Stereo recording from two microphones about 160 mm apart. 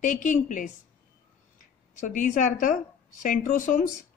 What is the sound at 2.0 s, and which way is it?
A woman's voice, 55° left (ahead or behind).